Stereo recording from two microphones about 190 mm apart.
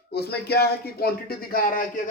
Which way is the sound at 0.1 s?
55° left (ahead or behind).